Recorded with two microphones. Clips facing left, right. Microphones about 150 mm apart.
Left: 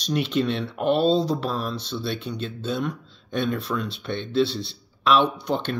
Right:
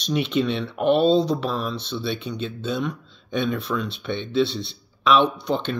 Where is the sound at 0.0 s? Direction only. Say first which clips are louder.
Right 1 dB; 5° left (ahead or behind).